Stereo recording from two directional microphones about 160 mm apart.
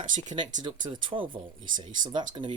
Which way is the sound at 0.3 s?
25° right (ahead or behind).